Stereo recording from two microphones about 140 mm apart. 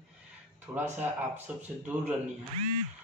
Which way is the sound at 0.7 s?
15° right (ahead or behind).